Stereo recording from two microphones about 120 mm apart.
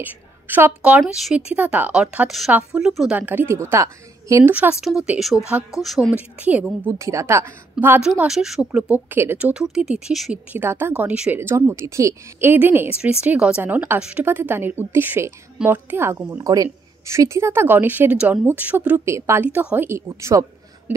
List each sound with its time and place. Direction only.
0.0 s a woman's voice: 15° right (ahead or behind)
3.2 s a woman's voice: 15° right (ahead or behind)
4.7 s speech: 5° right (ahead or behind)
6.1 s a woman's voice: 10° right (ahead or behind)
7.0 s a woman's voice: 25° right (ahead or behind)
8.0 s a woman's voice: 5° right (ahead or behind)
10.5 s a woman's voice: 15° right (ahead or behind)
18.9 s a woman's voice: 25° right (ahead or behind)
19.9 s a woman's voice: 25° right (ahead or behind)